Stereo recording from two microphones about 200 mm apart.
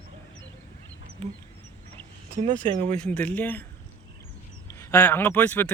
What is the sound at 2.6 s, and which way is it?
Speech, 25° right (ahead or behind).